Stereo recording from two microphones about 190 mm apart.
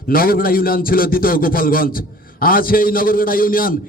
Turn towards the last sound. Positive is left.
turn(degrees=50)  # may be behind; listen again after turning